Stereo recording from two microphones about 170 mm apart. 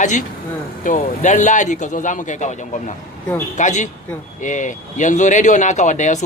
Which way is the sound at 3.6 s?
45° left (ahead or behind).